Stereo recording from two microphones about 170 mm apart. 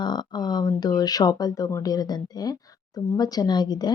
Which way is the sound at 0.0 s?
25° left (ahead or behind).